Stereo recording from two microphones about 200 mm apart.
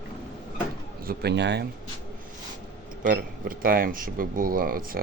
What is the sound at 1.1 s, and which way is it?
Speech, 55° right (ahead or behind).